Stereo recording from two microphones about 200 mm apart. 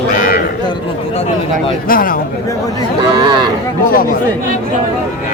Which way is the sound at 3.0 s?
25° right (ahead or behind).